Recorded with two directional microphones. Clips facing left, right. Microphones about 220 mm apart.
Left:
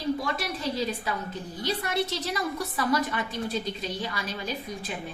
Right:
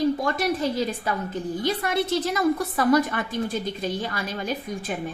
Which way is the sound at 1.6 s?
50° right (ahead or behind).